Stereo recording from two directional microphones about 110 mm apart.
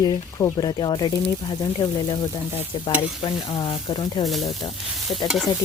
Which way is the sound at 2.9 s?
45° left (ahead or behind).